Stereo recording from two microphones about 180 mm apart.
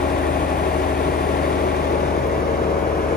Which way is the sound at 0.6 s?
60° left (ahead or behind).